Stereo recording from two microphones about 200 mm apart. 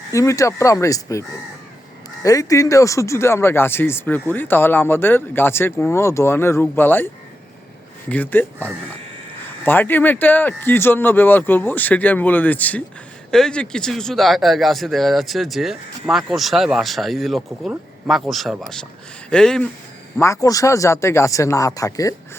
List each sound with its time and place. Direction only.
0.1 s speech: 15° left (ahead or behind)
2.2 s speech: 15° left (ahead or behind)
8.1 s speech: 10° left (ahead or behind)
9.6 s speech: 10° left (ahead or behind)
20.1 s speech: 15° left (ahead or behind)